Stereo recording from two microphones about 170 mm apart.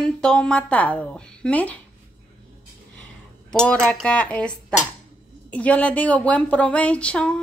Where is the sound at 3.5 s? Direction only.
5° left (ahead or behind).